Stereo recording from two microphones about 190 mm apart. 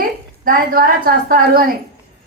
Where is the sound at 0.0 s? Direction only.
50° right (ahead or behind).